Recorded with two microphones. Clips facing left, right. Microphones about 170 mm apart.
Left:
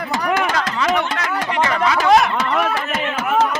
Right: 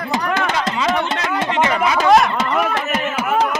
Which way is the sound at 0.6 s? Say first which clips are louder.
Even; 25° right (ahead or behind).